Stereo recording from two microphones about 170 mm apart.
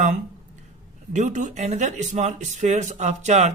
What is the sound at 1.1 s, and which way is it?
Speech, 45° right (ahead or behind).